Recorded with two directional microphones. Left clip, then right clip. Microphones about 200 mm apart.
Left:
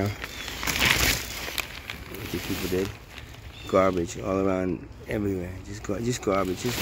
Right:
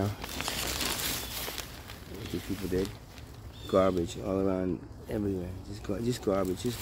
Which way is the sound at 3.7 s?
15° left (ahead or behind).